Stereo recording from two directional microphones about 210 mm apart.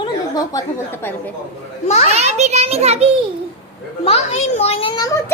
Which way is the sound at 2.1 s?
30° right (ahead or behind).